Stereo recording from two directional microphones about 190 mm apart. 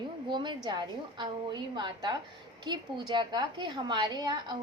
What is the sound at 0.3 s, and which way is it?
A woman's voice, 25° right (ahead or behind).